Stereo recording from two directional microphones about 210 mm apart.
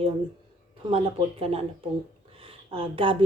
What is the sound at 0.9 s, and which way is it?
Speech, 30° right (ahead or behind).